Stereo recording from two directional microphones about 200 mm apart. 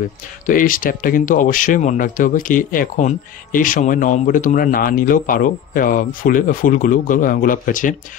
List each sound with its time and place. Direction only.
0.5 s speech: 45° left (ahead or behind)